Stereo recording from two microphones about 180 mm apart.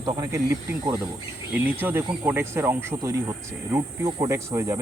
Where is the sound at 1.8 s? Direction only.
10° right (ahead or behind).